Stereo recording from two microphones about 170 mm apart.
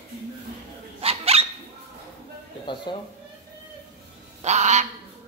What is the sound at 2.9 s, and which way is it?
Speech, 25° left (ahead or behind).